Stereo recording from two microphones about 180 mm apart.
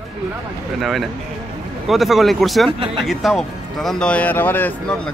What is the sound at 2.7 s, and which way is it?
Speech, 30° right (ahead or behind).